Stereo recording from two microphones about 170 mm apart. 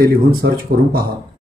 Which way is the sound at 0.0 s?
60° right (ahead or behind).